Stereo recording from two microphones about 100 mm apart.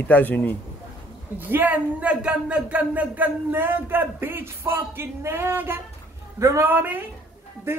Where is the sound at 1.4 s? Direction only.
20° right (ahead or behind).